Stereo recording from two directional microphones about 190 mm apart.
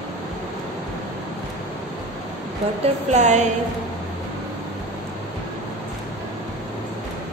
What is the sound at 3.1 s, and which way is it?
Speech, 40° right (ahead or behind).